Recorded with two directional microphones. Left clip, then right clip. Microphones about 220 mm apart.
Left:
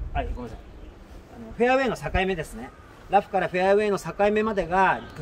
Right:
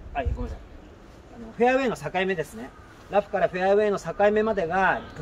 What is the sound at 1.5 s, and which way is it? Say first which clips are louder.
Speech: even; 30° left (ahead or behind).